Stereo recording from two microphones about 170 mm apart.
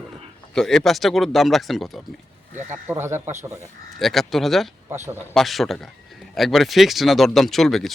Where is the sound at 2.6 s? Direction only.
15° right (ahead or behind).